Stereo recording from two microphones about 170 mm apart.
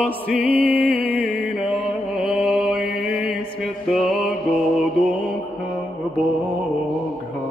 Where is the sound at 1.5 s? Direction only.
Centre (ahead or behind).